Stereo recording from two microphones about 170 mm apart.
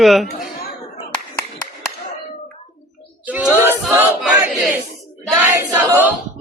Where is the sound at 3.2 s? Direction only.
10° right (ahead or behind).